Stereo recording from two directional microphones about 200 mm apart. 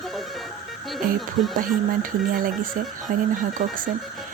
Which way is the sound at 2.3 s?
45° right (ahead or behind).